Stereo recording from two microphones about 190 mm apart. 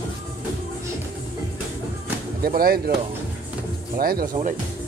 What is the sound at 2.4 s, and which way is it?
Speech, 50° right (ahead or behind).